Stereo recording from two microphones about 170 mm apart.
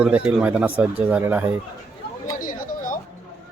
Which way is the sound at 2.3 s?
50° left (ahead or behind).